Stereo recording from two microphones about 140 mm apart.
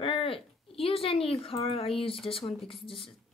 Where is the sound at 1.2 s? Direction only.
40° left (ahead or behind).